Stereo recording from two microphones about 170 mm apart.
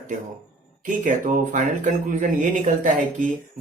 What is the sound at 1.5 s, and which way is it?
Speech, 50° right (ahead or behind).